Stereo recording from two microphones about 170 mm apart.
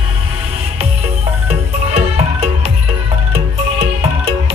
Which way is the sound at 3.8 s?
35° right (ahead or behind).